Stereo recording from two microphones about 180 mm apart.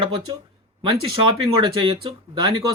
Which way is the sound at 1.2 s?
30° right (ahead or behind).